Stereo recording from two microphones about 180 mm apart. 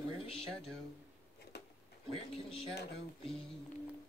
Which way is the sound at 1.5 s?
70° left (ahead or behind).